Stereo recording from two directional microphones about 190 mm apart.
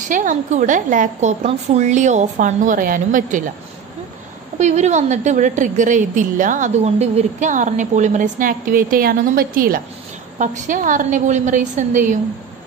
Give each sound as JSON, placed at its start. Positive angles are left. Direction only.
{"t": 0.1, "sound": "a woman's voice", "side_deg": -40}
{"t": 4.6, "sound": "a woman's voice", "side_deg": -35}